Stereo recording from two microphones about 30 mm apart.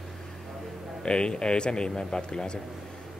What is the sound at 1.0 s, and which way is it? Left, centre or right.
A man's voice, left.